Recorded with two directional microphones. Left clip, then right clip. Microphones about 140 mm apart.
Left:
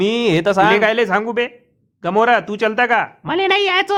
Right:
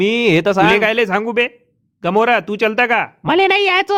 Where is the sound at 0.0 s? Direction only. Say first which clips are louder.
Right 2 dB; 35° right (ahead or behind).